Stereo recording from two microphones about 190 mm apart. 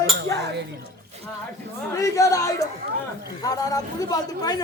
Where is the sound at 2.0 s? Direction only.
15° left (ahead or behind).